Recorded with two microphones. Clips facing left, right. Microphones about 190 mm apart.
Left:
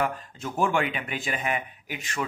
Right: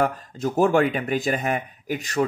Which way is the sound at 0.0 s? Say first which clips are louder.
Right 6 dB; 40° right (ahead or behind).